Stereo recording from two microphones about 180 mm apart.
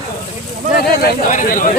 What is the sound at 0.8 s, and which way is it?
Speech, 55° left (ahead or behind).